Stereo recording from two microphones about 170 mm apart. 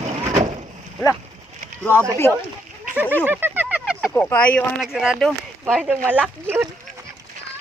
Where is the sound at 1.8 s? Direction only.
15° left (ahead or behind).